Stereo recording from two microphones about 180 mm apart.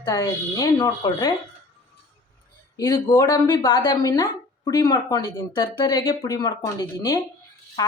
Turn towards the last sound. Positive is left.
turn(degrees=20)  # may be behind; listen again after turning